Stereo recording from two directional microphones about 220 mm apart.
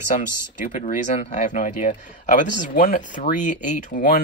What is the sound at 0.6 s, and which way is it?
Speech, 35° left (ahead or behind).